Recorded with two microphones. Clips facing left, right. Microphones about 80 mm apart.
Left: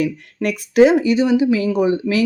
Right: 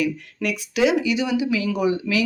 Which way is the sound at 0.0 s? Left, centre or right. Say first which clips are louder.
Left 4 dB; left.